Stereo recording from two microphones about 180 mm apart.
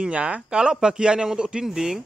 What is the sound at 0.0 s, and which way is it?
Speech, 5° right (ahead or behind).